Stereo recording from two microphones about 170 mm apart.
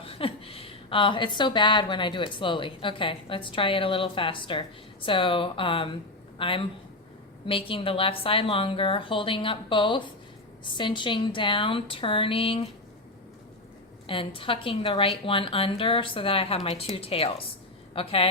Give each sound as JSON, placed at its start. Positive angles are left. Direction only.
{"t": 0.0, "sound": "a woman's voice", "side_deg": 30}
{"t": 14.1, "sound": "a woman's voice", "side_deg": 30}